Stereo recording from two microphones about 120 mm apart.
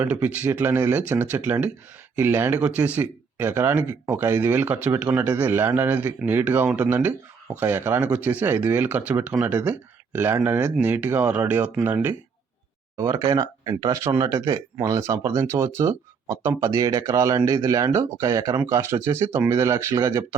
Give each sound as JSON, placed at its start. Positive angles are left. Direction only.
{"t": 0.0, "sound": "speech", "side_deg": -10}
{"t": 13.0, "sound": "speech", "side_deg": -25}